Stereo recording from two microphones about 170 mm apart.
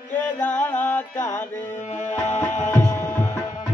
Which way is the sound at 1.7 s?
45° left (ahead or behind).